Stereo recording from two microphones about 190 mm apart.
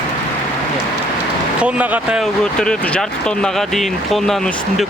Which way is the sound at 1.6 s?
5° right (ahead or behind).